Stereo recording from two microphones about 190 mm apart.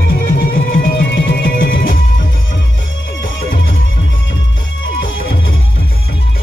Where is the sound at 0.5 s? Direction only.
50° left (ahead or behind); by 1.9 s 70° left (ahead or behind).